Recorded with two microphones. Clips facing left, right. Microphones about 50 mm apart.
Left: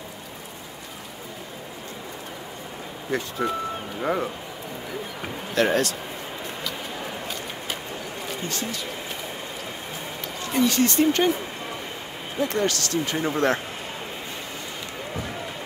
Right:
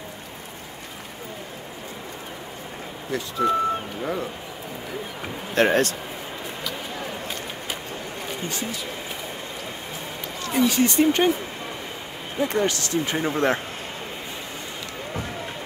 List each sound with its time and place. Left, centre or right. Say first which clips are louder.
3.1 s speech: right 3 dB; left
5.5 s speech: right 2 dB; right
8.5 s speech: even; centre
10.5 s speech: right 1 dB; centre
12.4 s speech: right 1 dB; centre